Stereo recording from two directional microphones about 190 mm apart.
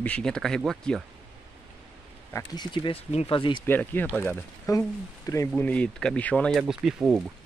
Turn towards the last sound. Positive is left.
turn(degrees=-5)  # may be behind; listen again after turning